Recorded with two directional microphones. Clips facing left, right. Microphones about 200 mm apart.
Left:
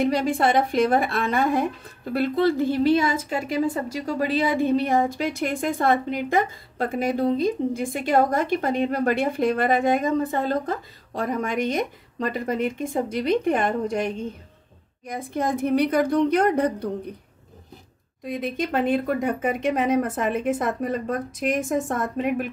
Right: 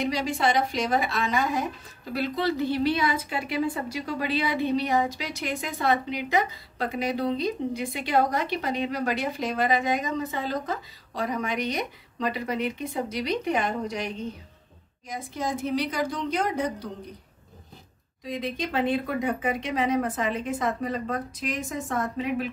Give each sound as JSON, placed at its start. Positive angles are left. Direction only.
{"t": 0.0, "sound": "a woman's voice", "side_deg": 55}
{"t": 18.2, "sound": "speech", "side_deg": 50}